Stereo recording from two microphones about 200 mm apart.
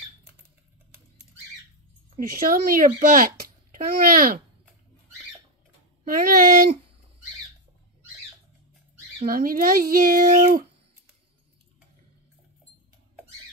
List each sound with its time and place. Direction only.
2.1 s a child's voice: 45° right (ahead or behind)
6.1 s a child's voice: 45° right (ahead or behind)
9.3 s a child's voice: 45° right (ahead or behind)